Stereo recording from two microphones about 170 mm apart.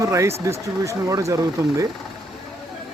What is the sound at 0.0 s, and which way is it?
Speech, 15° right (ahead or behind).